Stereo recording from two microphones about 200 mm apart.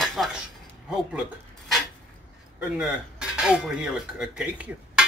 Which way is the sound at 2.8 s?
5° right (ahead or behind).